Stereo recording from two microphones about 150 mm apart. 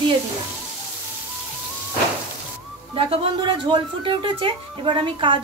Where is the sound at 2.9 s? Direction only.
40° right (ahead or behind).